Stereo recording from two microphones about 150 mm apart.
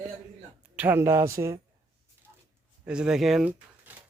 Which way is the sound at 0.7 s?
10° right (ahead or behind).